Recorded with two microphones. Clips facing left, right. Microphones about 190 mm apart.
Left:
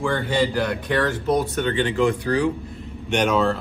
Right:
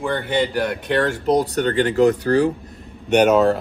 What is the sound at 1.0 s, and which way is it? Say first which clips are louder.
Speech: right 4 dB; 35° right (ahead or behind).